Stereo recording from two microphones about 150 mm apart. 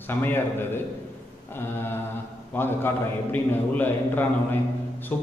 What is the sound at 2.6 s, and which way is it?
A man's voice, 15° left (ahead or behind).